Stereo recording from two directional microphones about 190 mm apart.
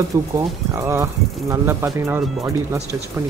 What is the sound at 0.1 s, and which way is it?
Speech, 15° right (ahead or behind).